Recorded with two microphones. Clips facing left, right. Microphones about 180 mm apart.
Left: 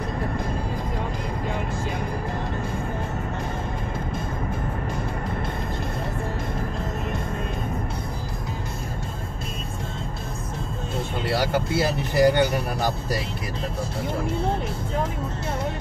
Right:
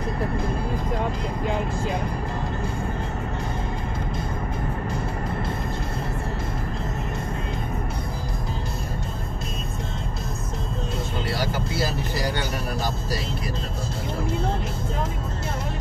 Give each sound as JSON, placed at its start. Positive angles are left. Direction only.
{"t": 11.8, "sound": "music", "side_deg": 60}